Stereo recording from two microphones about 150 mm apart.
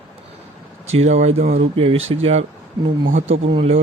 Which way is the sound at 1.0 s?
45° right (ahead or behind).